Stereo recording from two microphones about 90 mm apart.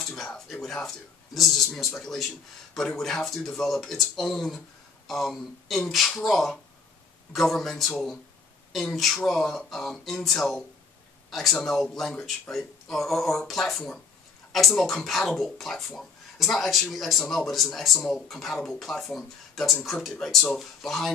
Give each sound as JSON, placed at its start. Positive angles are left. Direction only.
{"t": 0.0, "sound": "speech", "side_deg": 5}